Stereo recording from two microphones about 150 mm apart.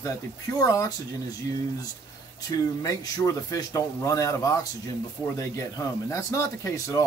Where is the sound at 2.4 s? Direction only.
25° left (ahead or behind).